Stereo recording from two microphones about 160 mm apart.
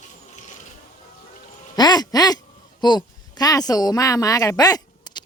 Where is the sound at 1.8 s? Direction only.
25° left (ahead or behind).